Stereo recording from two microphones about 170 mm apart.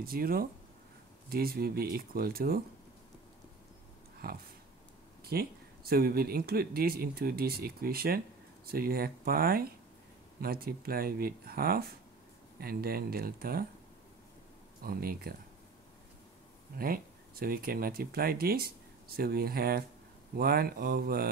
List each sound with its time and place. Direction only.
0.0 s speech: 60° right (ahead or behind)
4.2 s speech: 60° right (ahead or behind)
14.8 s speech: 60° right (ahead or behind)
16.7 s speech: 60° right (ahead or behind)